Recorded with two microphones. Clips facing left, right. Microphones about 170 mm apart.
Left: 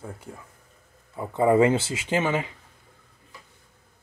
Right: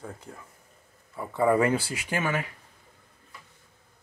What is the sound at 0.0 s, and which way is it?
Speech, 10° left (ahead or behind).